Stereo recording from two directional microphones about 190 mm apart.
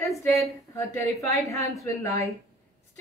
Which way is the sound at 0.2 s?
15° left (ahead or behind).